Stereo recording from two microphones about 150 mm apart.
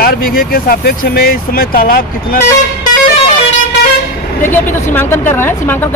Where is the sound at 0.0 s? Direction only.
85° left.